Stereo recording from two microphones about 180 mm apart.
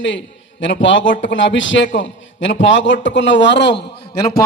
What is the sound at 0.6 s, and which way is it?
A man's voice, 90° left.